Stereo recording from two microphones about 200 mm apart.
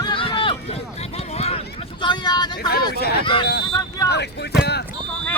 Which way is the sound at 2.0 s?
20° left (ahead or behind).